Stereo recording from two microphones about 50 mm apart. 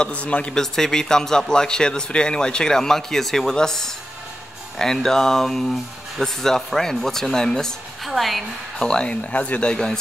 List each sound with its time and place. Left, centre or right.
0.0 s speech: left
0.6 s speech: centre
8.0 s a woman's voice: centre
8.7 s speech: centre